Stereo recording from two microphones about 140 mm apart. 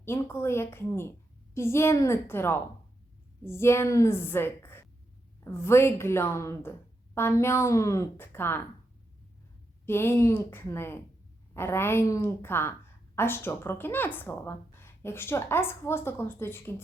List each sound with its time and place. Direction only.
0.0 s a woman's voice: 15° left (ahead or behind)
9.8 s a woman's voice: 15° left (ahead or behind)